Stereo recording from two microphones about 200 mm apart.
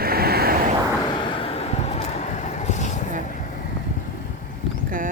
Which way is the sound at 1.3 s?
30° left (ahead or behind).